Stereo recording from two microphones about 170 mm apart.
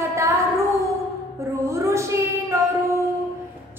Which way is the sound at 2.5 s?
15° right (ahead or behind).